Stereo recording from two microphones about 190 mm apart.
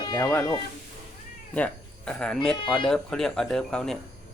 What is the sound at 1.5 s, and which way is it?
Speech, 5° left (ahead or behind).